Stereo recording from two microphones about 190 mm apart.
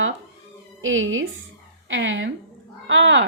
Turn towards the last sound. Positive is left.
turn(degrees=-80)